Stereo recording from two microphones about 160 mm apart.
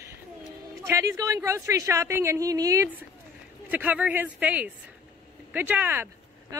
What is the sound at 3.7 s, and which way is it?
Speech, 10° right (ahead or behind).